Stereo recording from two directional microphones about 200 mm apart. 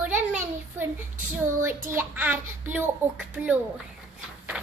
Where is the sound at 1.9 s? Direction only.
10° right (ahead or behind).